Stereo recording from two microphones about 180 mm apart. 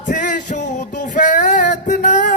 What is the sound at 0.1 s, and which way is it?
Music, 45° left (ahead or behind).